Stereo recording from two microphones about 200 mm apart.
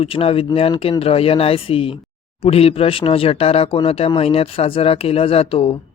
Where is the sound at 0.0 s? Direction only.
30° left (ahead or behind).